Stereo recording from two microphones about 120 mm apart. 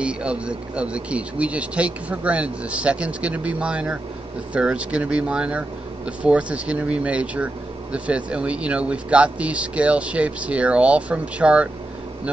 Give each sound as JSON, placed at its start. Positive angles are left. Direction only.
{"t": 0.0, "sound": "speech", "side_deg": -10}